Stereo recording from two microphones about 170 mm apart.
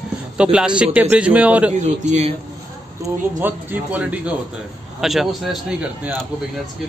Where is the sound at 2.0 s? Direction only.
40° right (ahead or behind).